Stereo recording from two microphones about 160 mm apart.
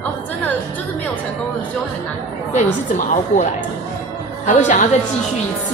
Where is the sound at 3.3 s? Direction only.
45° left (ahead or behind).